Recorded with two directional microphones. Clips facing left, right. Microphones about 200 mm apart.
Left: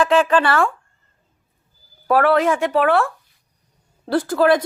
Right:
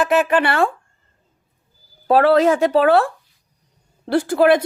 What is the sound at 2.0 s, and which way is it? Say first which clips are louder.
Speech: right 3 dB; 30° right (ahead or behind).